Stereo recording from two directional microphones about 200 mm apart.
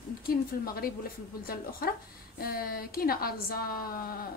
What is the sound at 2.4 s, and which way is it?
A woman's voice, 50° left (ahead or behind).